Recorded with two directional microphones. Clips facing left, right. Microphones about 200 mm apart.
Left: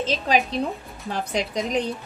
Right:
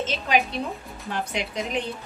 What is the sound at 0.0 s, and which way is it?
Speech, 35° left (ahead or behind).